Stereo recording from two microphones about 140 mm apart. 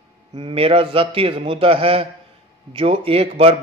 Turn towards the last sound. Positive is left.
turn(degrees=-45)  # may be behind; listen again after turning